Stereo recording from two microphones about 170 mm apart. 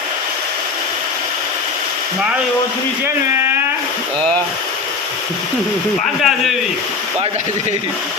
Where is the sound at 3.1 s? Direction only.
15° right (ahead or behind).